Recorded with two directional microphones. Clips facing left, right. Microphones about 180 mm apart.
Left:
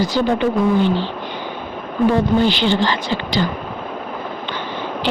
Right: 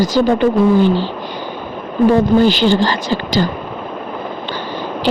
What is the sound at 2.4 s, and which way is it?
Speech, 40° right (ahead or behind).